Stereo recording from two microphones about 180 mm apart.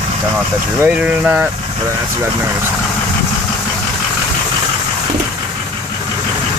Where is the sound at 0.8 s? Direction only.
5° right (ahead or behind).